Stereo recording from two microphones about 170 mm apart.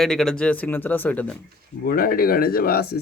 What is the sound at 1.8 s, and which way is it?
Speech, 60° left (ahead or behind).